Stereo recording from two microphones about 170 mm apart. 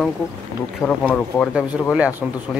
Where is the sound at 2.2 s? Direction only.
5° right (ahead or behind).